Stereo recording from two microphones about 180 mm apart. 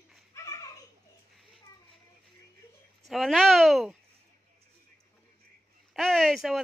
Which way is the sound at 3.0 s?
Centre (ahead or behind).